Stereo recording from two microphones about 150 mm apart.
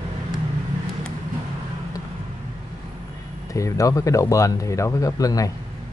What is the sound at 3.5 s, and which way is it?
Speech, 20° left (ahead or behind).